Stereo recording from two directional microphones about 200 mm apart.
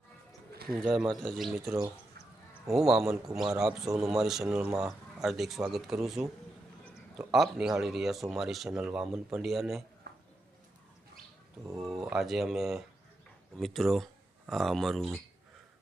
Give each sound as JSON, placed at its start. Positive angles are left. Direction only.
{"t": 0.8, "sound": "speech", "side_deg": 0}
{"t": 1.5, "sound": "speech", "side_deg": -15}
{"t": 2.7, "sound": "speech", "side_deg": 0}
{"t": 10.1, "sound": "a sound", "side_deg": -55}
{"t": 11.6, "sound": "speech", "side_deg": -15}
{"t": 11.9, "sound": "speech", "side_deg": 0}